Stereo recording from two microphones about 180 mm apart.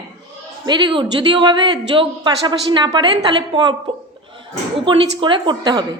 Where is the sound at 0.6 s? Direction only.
25° right (ahead or behind).